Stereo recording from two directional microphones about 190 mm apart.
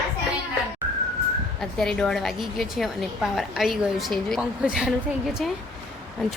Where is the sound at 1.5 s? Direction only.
5° left (ahead or behind).